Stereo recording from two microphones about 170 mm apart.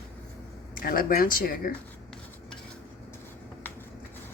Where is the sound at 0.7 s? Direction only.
55° left (ahead or behind).